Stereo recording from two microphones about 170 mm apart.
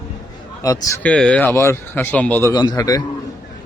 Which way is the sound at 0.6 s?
20° left (ahead or behind).